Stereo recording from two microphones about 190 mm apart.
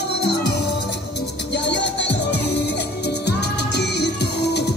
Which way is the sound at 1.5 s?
65° left (ahead or behind).